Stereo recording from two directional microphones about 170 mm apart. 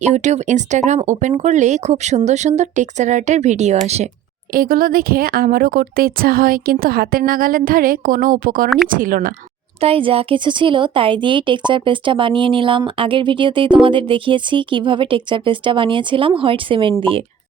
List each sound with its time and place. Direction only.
0.0 s speech: 45° right (ahead or behind)
4.5 s a woman's voice: 60° right (ahead or behind)
9.8 s speech: 35° right (ahead or behind)